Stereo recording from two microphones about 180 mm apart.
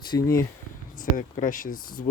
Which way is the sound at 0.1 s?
15° left (ahead or behind).